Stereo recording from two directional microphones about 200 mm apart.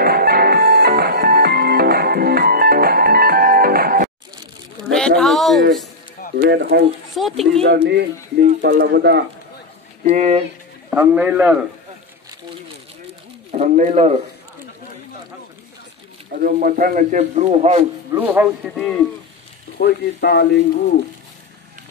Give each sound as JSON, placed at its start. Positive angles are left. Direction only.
{"t": 0.0, "sound": "music", "side_deg": -50}
{"t": 4.9, "sound": "a sound", "side_deg": 0}
{"t": 6.3, "sound": "speech", "side_deg": -55}
{"t": 7.2, "sound": "speech", "side_deg": 0}
{"t": 7.6, "sound": "speech", "side_deg": -55}
{"t": 8.4, "sound": "speech", "side_deg": -40}
{"t": 8.7, "sound": "speech", "side_deg": -55}
{"t": 10.0, "sound": "speech", "side_deg": -30}
{"t": 11.0, "sound": "a man's voice", "side_deg": -10}
{"t": 13.5, "sound": "speech", "side_deg": -35}
{"t": 16.3, "sound": "speech", "side_deg": -45}
{"t": 18.1, "sound": "a man's voice", "side_deg": -10}
{"t": 19.8, "sound": "speech", "side_deg": 55}